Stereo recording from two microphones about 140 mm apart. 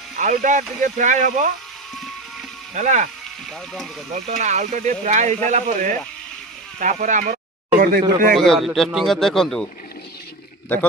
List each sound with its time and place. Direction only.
0.2 s speech: 70° right (ahead or behind)
2.7 s speech: 60° right (ahead or behind)
4.1 s speech: 60° right (ahead or behind); by 8.0 s 75° right (ahead or behind)
8.4 s speech: centre (ahead or behind)